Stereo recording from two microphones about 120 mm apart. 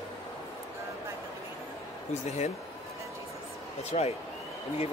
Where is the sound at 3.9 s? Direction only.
60° left (ahead or behind).